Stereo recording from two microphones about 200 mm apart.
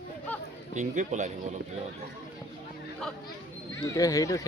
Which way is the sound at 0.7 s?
35° right (ahead or behind).